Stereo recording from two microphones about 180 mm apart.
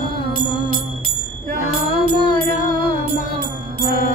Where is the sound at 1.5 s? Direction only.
55° right (ahead or behind).